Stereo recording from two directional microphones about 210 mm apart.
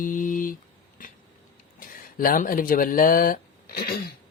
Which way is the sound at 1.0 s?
40° left (ahead or behind).